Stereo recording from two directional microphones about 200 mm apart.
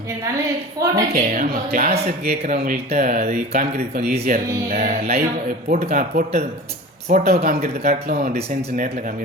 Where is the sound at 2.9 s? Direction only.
50° right (ahead or behind).